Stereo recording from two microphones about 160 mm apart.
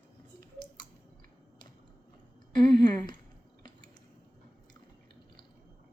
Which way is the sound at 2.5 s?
30° left (ahead or behind).